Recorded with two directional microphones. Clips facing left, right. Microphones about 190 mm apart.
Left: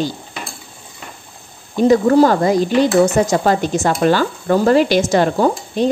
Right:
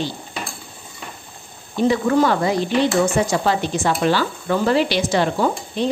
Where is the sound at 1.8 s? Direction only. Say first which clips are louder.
Left 6 dB; 40° left (ahead or behind).